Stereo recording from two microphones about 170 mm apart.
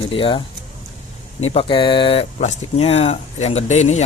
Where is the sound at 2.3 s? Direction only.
40° left (ahead or behind).